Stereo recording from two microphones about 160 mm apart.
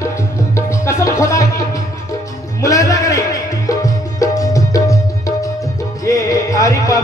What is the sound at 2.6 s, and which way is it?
Music, 20° left (ahead or behind).